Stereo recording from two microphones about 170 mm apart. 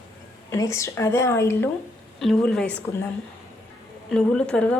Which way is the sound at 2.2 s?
Centre (ahead or behind).